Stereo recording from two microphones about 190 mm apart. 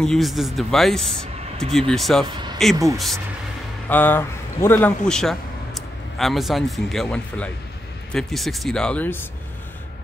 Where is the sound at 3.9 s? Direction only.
10° left (ahead or behind).